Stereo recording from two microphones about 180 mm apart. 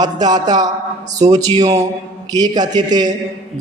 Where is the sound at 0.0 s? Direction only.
20° right (ahead or behind).